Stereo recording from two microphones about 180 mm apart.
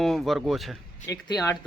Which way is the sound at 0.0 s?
Centre (ahead or behind).